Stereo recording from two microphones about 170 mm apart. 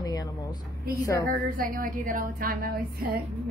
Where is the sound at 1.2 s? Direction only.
55° right (ahead or behind).